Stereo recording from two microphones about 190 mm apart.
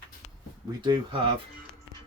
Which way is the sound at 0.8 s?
25° right (ahead or behind).